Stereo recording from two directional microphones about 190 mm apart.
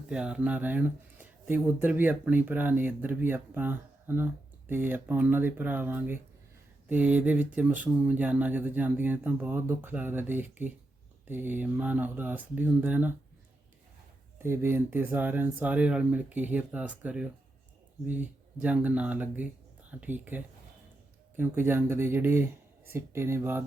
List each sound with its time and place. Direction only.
0.1 s speech: 5° right (ahead or behind)
14.3 s speech: 10° right (ahead or behind)